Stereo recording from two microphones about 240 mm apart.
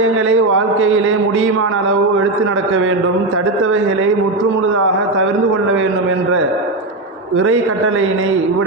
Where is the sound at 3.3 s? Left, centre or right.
Right.